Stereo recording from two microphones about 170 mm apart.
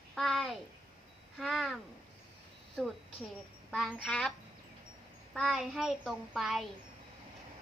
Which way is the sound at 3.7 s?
Centre (ahead or behind).